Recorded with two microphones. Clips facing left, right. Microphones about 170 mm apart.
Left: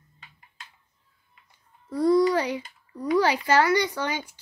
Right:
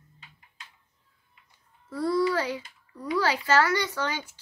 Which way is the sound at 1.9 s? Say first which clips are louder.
Left 5 dB; 15° left (ahead or behind).